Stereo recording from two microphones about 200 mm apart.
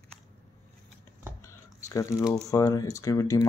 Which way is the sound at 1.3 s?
15° left (ahead or behind).